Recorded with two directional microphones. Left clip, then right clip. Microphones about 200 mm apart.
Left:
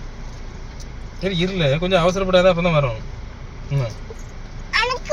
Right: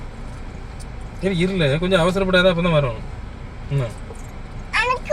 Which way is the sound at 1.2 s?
10° left (ahead or behind).